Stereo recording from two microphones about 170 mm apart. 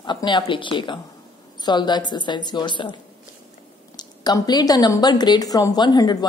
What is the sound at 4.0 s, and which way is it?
Speech, 25° left (ahead or behind).